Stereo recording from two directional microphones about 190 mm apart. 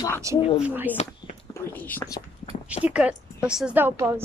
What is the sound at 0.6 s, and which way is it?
Speech, 10° right (ahead or behind).